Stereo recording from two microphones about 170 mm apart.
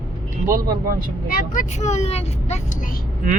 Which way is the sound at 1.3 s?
50° left (ahead or behind).